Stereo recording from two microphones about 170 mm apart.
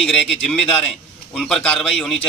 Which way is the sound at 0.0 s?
5° left (ahead or behind).